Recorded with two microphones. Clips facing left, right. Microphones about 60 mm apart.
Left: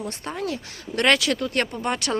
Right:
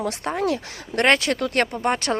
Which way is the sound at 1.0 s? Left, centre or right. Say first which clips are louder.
Right 1 dB; right.